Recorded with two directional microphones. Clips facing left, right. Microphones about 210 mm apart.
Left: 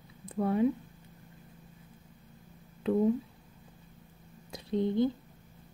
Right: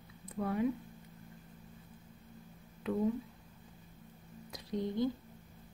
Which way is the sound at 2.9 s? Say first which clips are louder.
Left 7 dB; 30° left (ahead or behind).